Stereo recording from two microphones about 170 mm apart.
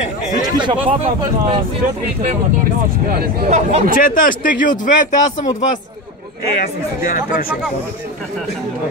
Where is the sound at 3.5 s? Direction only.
40° right (ahead or behind).